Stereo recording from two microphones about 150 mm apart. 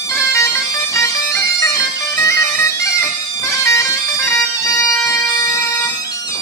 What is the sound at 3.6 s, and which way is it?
Bagpipes, 20° left (ahead or behind).